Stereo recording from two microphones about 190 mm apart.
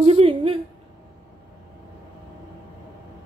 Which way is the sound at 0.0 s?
30° right (ahead or behind).